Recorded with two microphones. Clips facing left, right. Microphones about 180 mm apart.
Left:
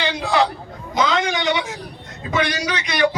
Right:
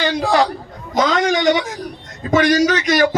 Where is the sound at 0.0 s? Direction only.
45° right (ahead or behind).